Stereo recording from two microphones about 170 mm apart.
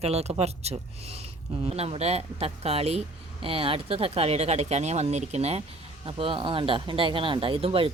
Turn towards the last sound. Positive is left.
turn(degrees=-35)  # may be behind; listen again after turning